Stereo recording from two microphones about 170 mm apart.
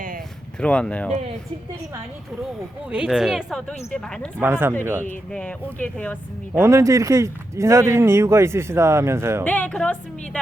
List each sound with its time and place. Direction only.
0.6 s speech: 5° left (ahead or behind)
2.9 s speech: 5° right (ahead or behind)
4.4 s a man's voice: 15° right (ahead or behind)
5.0 s speech: 5° left (ahead or behind)
6.5 s a man's voice: 15° right (ahead or behind)
9.4 s speech: 10° left (ahead or behind)